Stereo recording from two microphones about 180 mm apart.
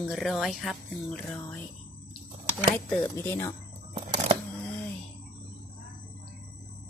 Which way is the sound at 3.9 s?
40° right (ahead or behind).